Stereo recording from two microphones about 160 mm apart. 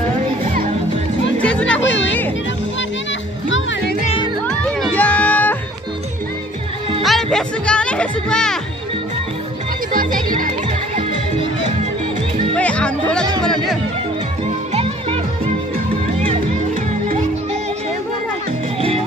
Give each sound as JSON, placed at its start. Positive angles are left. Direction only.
{"t": 1.4, "sound": "music", "side_deg": 5}
{"t": 4.5, "sound": "music", "side_deg": 5}
{"t": 7.0, "sound": "speech", "side_deg": 0}
{"t": 9.9, "sound": "music", "side_deg": -60}
{"t": 12.5, "sound": "music", "side_deg": 10}
{"t": 14.7, "sound": "music", "side_deg": -40}
{"t": 18.8, "sound": "music", "side_deg": -35}